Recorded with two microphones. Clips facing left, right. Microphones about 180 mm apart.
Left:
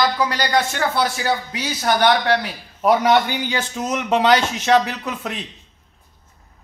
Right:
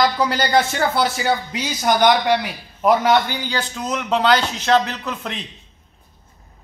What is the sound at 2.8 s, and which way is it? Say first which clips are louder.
Speech: even; centre (ahead or behind).